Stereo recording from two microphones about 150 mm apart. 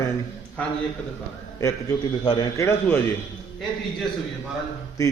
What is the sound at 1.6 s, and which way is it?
A man's voice, 25° left (ahead or behind).